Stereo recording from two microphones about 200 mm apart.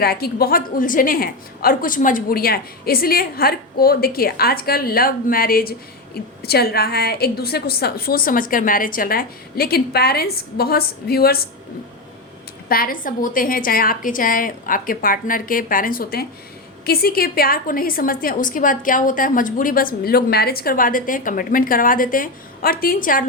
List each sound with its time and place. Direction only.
0.0 s a woman's voice: 50° left (ahead or behind)
12.6 s a woman's voice: 45° left (ahead or behind)